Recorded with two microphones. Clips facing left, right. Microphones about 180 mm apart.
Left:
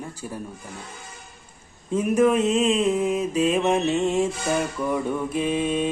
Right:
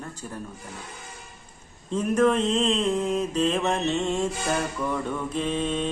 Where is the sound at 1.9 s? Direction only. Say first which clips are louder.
Left 2 dB; 10° left (ahead or behind).